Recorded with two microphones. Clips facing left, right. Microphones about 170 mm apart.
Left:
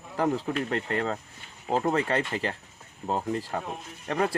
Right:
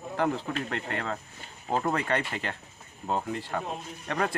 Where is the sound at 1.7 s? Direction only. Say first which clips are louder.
Left 2 dB; 30° left (ahead or behind).